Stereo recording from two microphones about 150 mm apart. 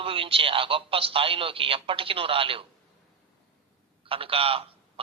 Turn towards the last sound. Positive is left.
turn(degrees=-40)  # may be behind; listen again after turning